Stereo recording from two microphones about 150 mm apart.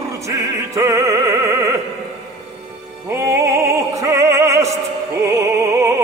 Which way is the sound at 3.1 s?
20° right (ahead or behind).